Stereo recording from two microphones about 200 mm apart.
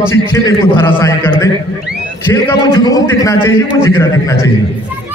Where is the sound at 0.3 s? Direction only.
15° left (ahead or behind).